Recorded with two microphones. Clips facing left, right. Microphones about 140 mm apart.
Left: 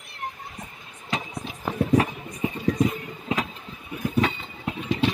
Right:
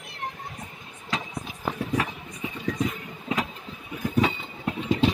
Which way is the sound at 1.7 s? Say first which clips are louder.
Left 10 dB; 35° left (ahead or behind).